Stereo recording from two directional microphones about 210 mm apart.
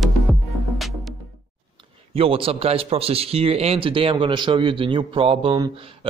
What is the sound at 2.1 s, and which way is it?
A man's voice, 25° right (ahead or behind).